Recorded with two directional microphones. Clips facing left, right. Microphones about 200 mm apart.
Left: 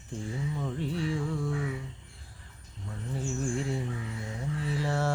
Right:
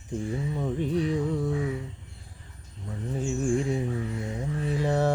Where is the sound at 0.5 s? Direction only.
20° right (ahead or behind).